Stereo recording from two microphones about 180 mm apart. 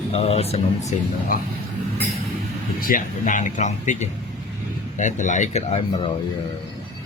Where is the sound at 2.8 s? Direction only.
50° left (ahead or behind).